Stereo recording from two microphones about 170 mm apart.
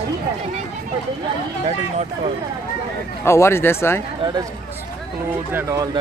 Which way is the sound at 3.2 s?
15° left (ahead or behind).